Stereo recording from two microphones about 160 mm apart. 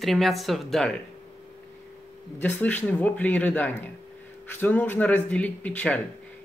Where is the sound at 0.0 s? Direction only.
Centre (ahead or behind).